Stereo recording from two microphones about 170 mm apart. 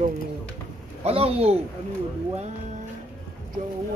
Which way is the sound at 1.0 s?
35° right (ahead or behind).